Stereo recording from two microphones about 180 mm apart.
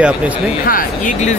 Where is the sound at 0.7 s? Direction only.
50° left (ahead or behind).